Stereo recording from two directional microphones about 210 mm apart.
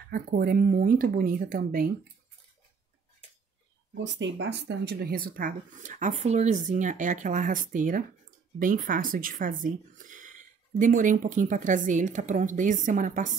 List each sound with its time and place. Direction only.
0.1 s speech: 45° right (ahead or behind)
3.9 s speech: 60° right (ahead or behind); by 13.4 s 35° right (ahead or behind)